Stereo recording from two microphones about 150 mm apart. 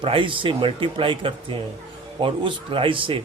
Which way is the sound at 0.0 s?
35° right (ahead or behind).